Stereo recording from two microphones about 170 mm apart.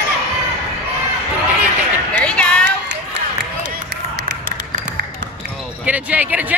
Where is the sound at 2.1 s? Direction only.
5° left (ahead or behind).